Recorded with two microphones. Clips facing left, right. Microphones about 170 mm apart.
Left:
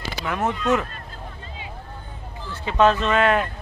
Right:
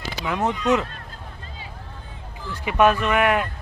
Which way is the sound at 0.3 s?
15° right (ahead or behind).